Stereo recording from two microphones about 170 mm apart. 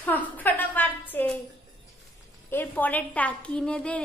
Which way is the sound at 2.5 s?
10° left (ahead or behind).